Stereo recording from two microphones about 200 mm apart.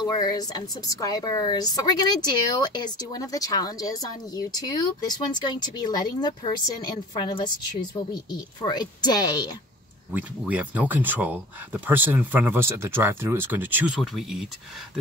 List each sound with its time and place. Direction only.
0.0 s a woman's voice: 20° left (ahead or behind)
10.1 s speech: 10° right (ahead or behind)